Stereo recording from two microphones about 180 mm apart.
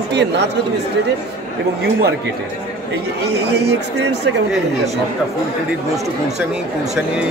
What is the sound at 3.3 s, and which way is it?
Speech, 70° right (ahead or behind).